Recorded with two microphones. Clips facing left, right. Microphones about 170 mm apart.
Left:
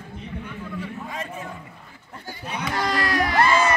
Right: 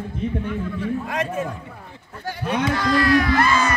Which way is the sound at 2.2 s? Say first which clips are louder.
Right 9 dB; 75° right (ahead or behind).